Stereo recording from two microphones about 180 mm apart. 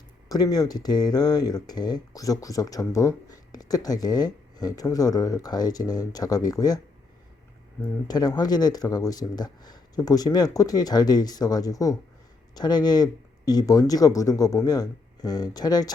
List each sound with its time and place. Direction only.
0.3 s speech: 20° left (ahead or behind)
8.0 s speech: 20° left (ahead or behind)